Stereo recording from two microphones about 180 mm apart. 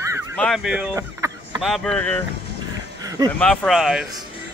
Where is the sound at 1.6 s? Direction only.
Centre (ahead or behind).